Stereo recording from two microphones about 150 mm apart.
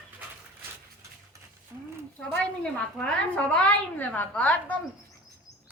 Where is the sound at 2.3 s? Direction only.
5° left (ahead or behind).